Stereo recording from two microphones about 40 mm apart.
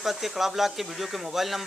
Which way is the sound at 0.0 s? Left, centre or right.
Centre.